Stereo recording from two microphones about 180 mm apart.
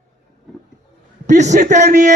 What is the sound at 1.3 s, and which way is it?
Speech, 40° right (ahead or behind).